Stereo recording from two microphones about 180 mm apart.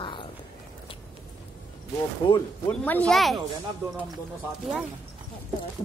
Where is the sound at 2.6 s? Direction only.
10° left (ahead or behind).